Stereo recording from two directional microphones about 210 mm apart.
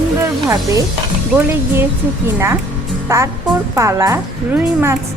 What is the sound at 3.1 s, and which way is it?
Speech, 15° right (ahead or behind).